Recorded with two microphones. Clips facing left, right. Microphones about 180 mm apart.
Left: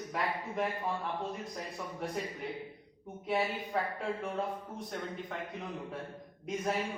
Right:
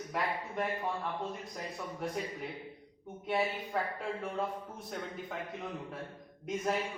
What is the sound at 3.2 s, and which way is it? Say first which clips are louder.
A man's voice: even; centre (ahead or behind).